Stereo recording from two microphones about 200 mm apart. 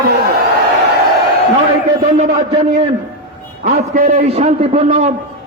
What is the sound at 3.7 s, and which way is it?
Speech, 45° right (ahead or behind).